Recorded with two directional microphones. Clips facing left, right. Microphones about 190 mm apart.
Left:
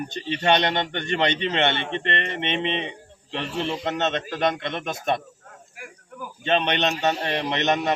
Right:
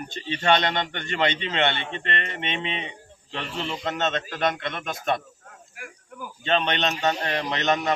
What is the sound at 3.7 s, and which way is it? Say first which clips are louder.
Speech: even; 20° left (ahead or behind).